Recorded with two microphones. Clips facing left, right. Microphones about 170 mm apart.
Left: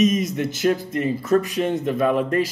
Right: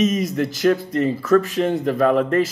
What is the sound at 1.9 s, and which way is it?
Speech, 75° right (ahead or behind).